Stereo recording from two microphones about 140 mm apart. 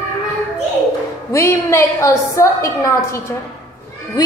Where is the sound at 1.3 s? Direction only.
20° left (ahead or behind).